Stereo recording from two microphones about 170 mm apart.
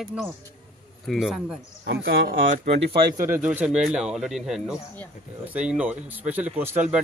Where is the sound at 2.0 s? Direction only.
90° right.